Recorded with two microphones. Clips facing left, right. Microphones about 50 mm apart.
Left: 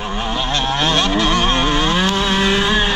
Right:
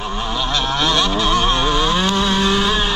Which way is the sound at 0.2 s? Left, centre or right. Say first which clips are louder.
Left 1 dB; left.